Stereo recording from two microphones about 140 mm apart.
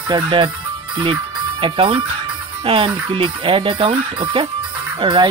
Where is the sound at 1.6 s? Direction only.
40° right (ahead or behind).